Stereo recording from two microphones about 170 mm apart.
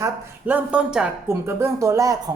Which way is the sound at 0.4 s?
10° right (ahead or behind).